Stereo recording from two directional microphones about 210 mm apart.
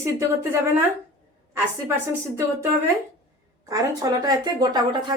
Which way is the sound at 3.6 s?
15° right (ahead or behind).